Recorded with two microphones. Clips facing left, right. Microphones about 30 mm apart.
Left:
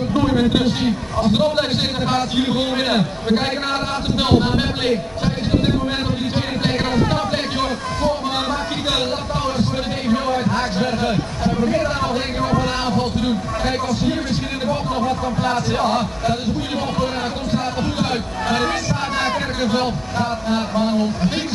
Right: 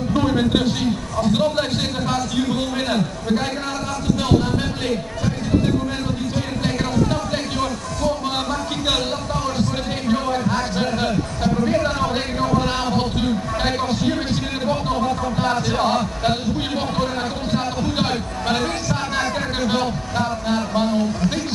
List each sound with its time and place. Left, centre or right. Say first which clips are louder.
0.1 s a sound: left 1 dB; centre
0.8 s a man's voice: left 2 dB; left
1.3 s a man's voice: left 2 dB; centre
2.1 s a man's voice: left 3 dB; left
7.1 s a sound: left 2 dB; left
10.0 s a sound: left 1 dB; centre
11.1 s a man's voice: left 1 dB; left
11.6 s speech: left 1 dB; centre
14.7 s speech: even; centre
18.6 s chatter: left 2 dB; left